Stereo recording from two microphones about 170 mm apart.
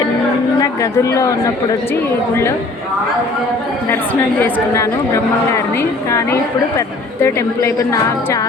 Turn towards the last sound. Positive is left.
turn(degrees=15)  # may be behind; listen again after turning